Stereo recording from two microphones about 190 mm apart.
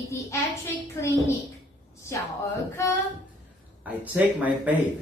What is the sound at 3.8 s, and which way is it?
Speech, 10° right (ahead or behind).